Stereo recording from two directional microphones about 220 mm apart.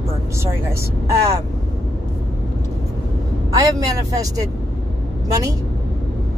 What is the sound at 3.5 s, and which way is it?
Speech, 15° right (ahead or behind).